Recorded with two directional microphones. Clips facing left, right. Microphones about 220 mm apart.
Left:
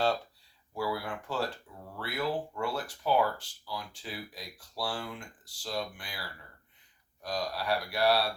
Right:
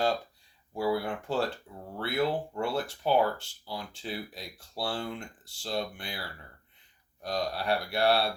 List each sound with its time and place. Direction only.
0.7 s speech: 25° right (ahead or behind)
7.2 s speech: 25° right (ahead or behind)